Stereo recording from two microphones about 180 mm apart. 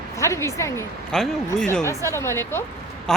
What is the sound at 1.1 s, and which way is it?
Speech, 5° left (ahead or behind).